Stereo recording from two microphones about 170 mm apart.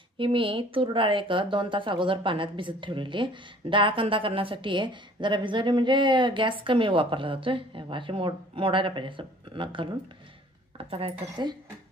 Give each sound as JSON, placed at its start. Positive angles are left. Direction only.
{"t": 0.2, "sound": "a woman's voice", "side_deg": -30}
{"t": 10.9, "sound": "speech", "side_deg": -35}